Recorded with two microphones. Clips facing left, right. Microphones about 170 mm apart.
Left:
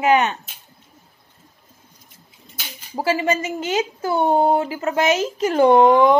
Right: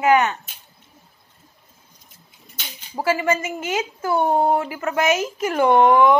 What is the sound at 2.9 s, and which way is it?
Speech, 30° left (ahead or behind).